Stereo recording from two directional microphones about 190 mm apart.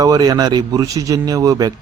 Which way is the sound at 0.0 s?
20° right (ahead or behind).